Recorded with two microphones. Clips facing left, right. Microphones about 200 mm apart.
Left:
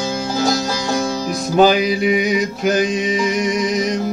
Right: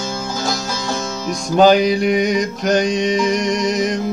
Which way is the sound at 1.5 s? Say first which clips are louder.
Right 2 dB; 5° left (ahead or behind).